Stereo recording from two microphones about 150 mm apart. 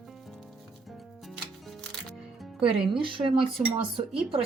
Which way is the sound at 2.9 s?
35° right (ahead or behind).